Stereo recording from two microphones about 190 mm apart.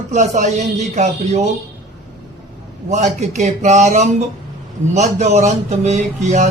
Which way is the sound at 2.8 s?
35° right (ahead or behind).